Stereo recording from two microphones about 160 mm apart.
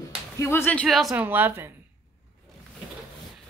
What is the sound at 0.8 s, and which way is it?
Speech, centre (ahead or behind).